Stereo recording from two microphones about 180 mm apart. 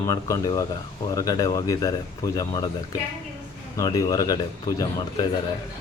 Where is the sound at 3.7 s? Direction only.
20° left (ahead or behind).